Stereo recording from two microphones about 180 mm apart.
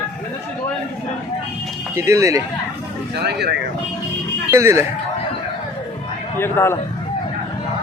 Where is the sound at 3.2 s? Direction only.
65° right (ahead or behind).